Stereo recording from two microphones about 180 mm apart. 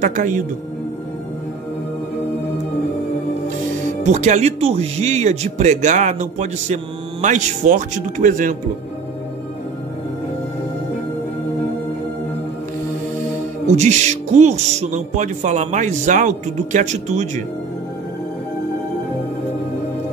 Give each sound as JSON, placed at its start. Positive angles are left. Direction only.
{"t": 0.0, "sound": "a woman's voice", "side_deg": -45}
{"t": 4.0, "sound": "speech", "side_deg": -40}
{"t": 13.7, "sound": "speech", "side_deg": -40}